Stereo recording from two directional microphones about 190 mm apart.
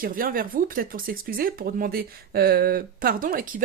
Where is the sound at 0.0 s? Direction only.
50° right (ahead or behind).